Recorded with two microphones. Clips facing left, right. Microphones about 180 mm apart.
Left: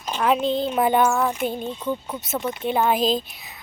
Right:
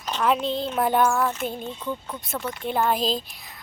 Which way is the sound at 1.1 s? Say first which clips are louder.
Left 2 dB; 15° left (ahead or behind).